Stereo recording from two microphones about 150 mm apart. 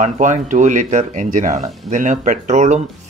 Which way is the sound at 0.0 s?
55° right (ahead or behind).